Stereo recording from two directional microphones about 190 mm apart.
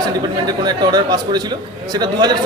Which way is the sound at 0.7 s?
20° right (ahead or behind).